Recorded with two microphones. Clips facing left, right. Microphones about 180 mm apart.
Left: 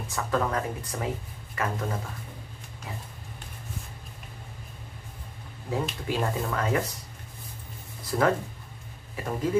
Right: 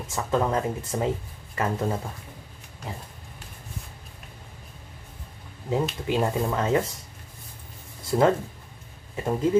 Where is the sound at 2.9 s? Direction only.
30° right (ahead or behind).